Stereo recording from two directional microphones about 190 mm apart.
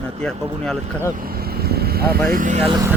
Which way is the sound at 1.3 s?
55° right (ahead or behind).